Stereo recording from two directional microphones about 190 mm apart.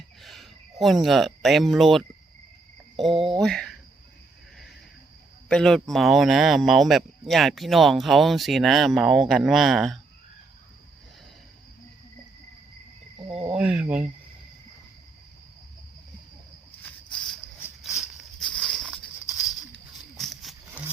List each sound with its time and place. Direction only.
0.2 s speech: centre (ahead or behind)
5.5 s speech: 5° left (ahead or behind)
13.2 s speech: 30° right (ahead or behind)
13.5 s speech: 5° right (ahead or behind)
17.8 s walk: 5° right (ahead or behind)
20.1 s a sound: centre (ahead or behind)